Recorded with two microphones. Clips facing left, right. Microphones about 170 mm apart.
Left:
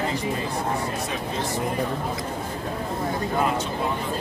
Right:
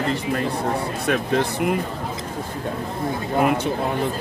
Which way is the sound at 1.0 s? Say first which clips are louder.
Right 8 dB; 70° right (ahead or behind).